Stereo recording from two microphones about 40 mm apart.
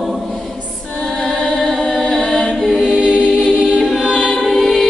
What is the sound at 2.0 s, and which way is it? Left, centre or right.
A capella, centre.